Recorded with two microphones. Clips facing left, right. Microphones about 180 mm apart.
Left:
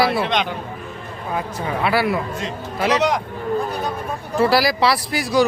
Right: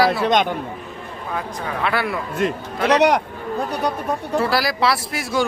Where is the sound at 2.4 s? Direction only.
55° right (ahead or behind); by 3.9 s 70° right (ahead or behind).